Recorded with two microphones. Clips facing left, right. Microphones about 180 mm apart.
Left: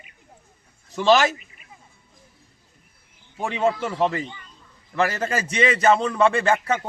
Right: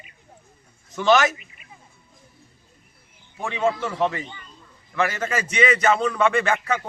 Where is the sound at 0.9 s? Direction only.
30° left (ahead or behind).